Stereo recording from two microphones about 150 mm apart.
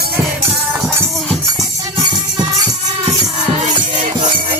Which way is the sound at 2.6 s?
50° right (ahead or behind).